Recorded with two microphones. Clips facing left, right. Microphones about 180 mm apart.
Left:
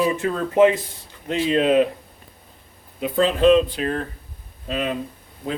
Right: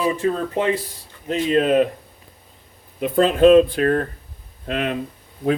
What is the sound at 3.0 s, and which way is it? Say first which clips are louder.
Speech: right 4 dB; 50° right (ahead or behind).